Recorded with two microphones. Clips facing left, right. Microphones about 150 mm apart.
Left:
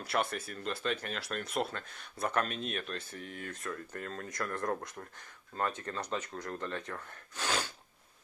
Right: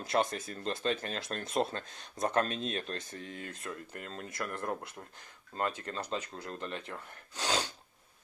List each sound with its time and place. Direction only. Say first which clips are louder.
0.0 s speech: right 3 dB; 20° right (ahead or behind)
0.6 s speech: right 3 dB; 30° right (ahead or behind)
4.6 s speech: left 2 dB; 10° right (ahead or behind)
5.5 s speech: even; 25° right (ahead or behind)
6.1 s speech: left 1 dB; 10° right (ahead or behind)